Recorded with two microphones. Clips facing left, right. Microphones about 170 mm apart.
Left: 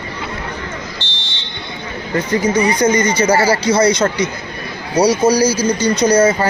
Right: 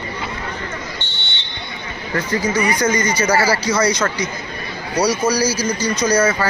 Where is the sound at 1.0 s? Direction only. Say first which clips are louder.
Left 1 dB; 90° left.